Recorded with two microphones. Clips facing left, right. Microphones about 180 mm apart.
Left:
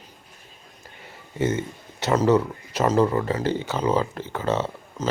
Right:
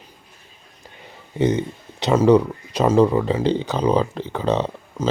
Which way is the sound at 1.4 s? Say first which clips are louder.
Right 5 dB; 15° right (ahead or behind).